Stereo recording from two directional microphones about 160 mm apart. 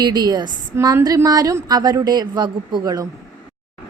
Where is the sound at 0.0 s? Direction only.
25° right (ahead or behind).